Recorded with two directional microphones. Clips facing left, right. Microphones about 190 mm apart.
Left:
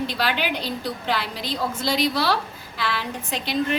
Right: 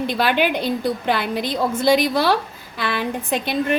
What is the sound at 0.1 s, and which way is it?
A woman's voice, 55° right (ahead or behind).